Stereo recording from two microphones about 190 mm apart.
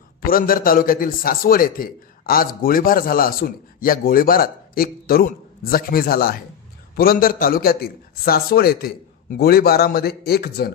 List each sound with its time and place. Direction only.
0.2 s a man's voice: 50° left (ahead or behind)